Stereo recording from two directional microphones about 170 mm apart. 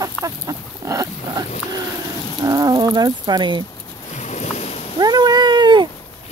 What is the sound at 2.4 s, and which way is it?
Speech, 20° right (ahead or behind).